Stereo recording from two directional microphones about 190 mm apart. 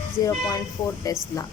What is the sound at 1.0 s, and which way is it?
Speech, 20° left (ahead or behind).